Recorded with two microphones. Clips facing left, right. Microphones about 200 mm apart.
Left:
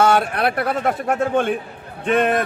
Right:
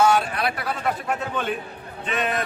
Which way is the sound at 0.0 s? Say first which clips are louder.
Left 3 dB; 55° left (ahead or behind).